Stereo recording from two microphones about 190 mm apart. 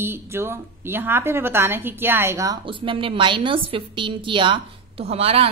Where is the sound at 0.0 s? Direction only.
15° right (ahead or behind).